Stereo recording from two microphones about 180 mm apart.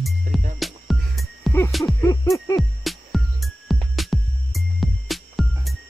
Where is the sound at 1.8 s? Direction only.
20° left (ahead or behind).